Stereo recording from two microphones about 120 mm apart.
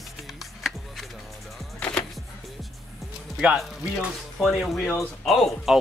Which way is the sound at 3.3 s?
5° right (ahead or behind).